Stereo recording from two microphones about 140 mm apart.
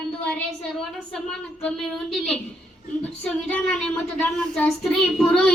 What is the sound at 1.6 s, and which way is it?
A child's voice, 5° left (ahead or behind).